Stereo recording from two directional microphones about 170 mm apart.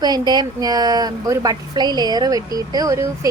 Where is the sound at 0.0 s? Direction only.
25° right (ahead or behind).